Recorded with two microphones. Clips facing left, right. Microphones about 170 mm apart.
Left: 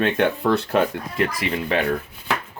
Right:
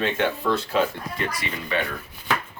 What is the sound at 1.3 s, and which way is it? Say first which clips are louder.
Speech: left 5 dB; 80° left.